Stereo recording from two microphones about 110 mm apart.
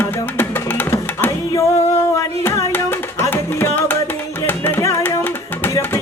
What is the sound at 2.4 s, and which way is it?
Music, 20° left (ahead or behind).